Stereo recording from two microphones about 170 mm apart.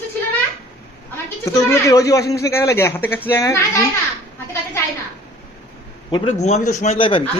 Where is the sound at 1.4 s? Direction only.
15° left (ahead or behind).